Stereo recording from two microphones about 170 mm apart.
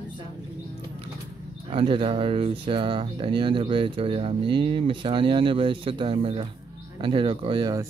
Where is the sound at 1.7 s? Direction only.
30° right (ahead or behind).